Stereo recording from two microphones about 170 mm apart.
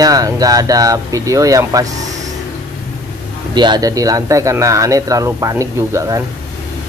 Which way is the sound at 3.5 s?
25° right (ahead or behind).